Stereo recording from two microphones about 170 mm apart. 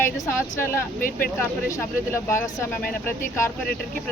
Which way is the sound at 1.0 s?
55° left (ahead or behind).